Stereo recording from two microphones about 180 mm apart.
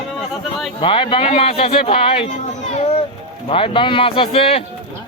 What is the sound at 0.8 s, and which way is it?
Speech, 30° left (ahead or behind).